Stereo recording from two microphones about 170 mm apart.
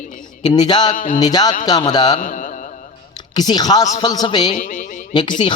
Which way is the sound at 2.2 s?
55° left (ahead or behind).